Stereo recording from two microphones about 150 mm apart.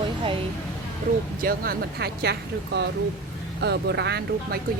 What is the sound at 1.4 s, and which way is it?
Speech, 80° right.